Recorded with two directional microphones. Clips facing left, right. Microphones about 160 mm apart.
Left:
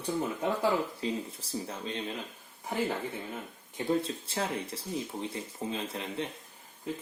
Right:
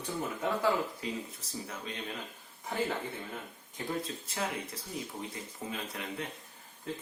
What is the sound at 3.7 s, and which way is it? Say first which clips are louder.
Speech: left 6 dB; 30° left (ahead or behind).